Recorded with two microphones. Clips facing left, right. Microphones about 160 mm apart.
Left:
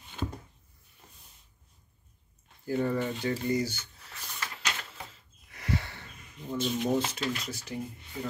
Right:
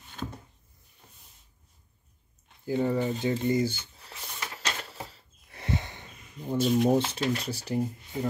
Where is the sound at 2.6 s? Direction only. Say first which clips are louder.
Right 2 dB; 15° right (ahead or behind).